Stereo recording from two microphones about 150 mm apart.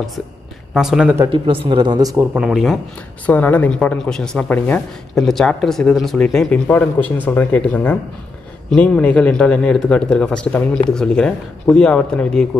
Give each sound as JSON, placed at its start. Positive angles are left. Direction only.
{"t": 0.7, "sound": "speech", "side_deg": -5}
{"t": 1.3, "sound": "speech", "side_deg": -35}
{"t": 2.3, "sound": "speech", "side_deg": -5}
{"t": 3.3, "sound": "speech", "side_deg": 10}